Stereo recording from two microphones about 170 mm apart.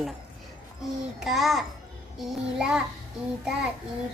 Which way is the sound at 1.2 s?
Centre (ahead or behind).